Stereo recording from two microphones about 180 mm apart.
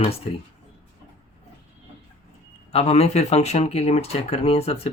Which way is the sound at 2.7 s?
35° left (ahead or behind).